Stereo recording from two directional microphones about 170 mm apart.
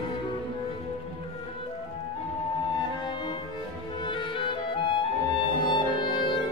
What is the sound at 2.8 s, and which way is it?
Music, 25° left (ahead or behind).